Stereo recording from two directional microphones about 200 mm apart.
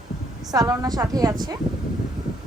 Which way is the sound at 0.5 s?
15° right (ahead or behind).